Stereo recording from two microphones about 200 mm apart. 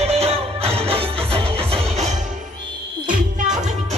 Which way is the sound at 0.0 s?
30° right (ahead or behind).